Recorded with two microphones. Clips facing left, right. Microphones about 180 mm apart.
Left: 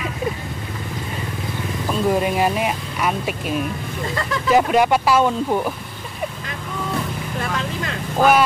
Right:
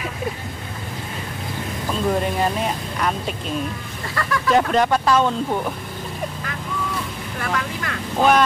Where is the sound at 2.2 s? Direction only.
10° left (ahead or behind).